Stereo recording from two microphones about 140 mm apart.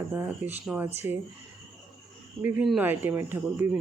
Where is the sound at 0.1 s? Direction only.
15° right (ahead or behind).